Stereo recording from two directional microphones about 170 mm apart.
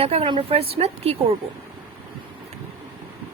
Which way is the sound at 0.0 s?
35° right (ahead or behind).